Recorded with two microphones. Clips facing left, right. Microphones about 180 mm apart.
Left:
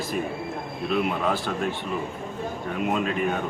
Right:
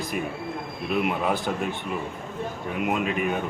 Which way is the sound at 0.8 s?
15° right (ahead or behind).